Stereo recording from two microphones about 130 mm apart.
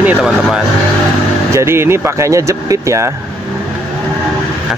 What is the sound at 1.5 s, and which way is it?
Speech, 20° right (ahead or behind).